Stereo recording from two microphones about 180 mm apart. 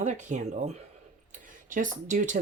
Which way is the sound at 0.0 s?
40° right (ahead or behind).